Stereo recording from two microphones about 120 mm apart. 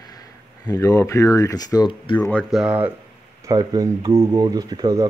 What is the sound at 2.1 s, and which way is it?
Speech, 15° left (ahead or behind).